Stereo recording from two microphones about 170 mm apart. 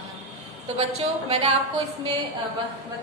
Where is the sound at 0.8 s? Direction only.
40° right (ahead or behind).